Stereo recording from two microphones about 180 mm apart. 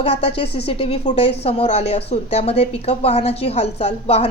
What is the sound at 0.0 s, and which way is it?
Speech, 30° left (ahead or behind).